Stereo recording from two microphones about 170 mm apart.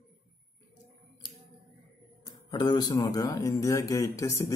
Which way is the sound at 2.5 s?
25° left (ahead or behind).